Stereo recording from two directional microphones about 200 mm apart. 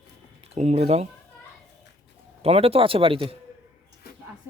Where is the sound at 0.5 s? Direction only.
35° right (ahead or behind).